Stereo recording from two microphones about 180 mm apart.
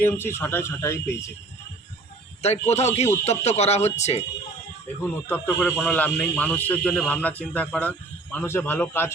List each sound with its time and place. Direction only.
0.0 s speech: 10° left (ahead or behind)
2.4 s speech: 35° left (ahead or behind)
5.0 s speech: 10° left (ahead or behind)